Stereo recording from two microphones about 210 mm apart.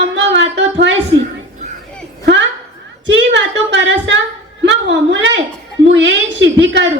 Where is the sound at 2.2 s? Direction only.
60° right (ahead or behind).